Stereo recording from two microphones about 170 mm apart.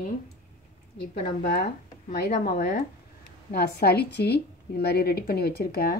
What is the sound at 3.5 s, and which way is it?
A woman's voice, 70° left (ahead or behind).